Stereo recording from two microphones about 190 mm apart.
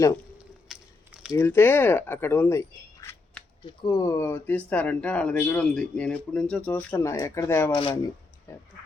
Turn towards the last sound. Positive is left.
turn(degrees=30)  # may be behind; listen again after turning